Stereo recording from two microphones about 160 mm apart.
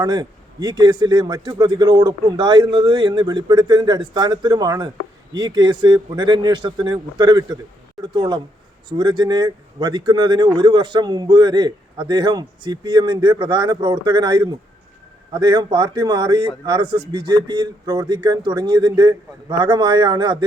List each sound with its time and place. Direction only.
0.0 s speech: 25° right (ahead or behind)